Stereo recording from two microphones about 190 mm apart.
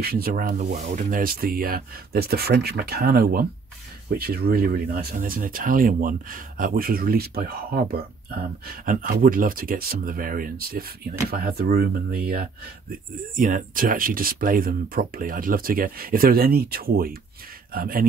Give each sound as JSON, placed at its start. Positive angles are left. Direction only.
{"t": 0.0, "sound": "speech", "side_deg": -55}